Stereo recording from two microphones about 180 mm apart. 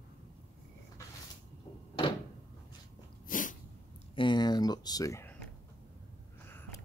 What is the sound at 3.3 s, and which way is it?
Sneeze, 45° left (ahead or behind).